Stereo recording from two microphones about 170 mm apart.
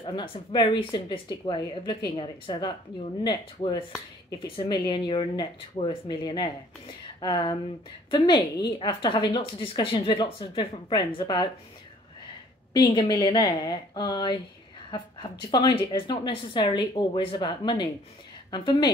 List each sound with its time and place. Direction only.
0.0 s a woman's voice: 30° left (ahead or behind)
12.7 s a woman's voice: 20° left (ahead or behind)
15.5 s a woman's voice: 25° left (ahead or behind)